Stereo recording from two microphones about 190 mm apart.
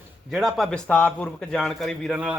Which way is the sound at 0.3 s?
Centre (ahead or behind).